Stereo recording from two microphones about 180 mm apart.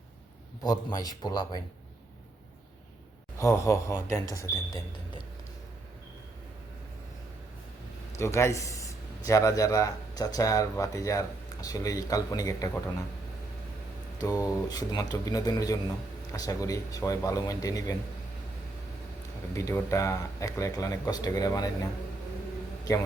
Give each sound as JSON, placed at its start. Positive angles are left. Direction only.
{"t": 0.6, "sound": "a man's voice", "side_deg": 20}
{"t": 3.3, "sound": "speech", "side_deg": 15}
{"t": 8.2, "sound": "a man's voice", "side_deg": 15}
{"t": 14.2, "sound": "a man's voice", "side_deg": 20}
{"t": 19.5, "sound": "a man's voice", "side_deg": 15}
{"t": 22.9, "sound": "a man's voice", "side_deg": 20}